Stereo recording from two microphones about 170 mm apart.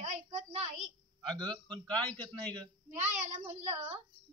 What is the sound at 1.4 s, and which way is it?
Speech, 25° right (ahead or behind).